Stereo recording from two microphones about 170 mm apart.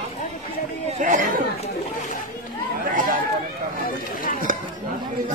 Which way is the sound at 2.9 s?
55° right (ahead or behind).